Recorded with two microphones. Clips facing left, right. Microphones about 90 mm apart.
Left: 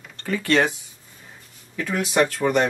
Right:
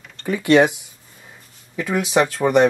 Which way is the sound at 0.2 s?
15° right (ahead or behind).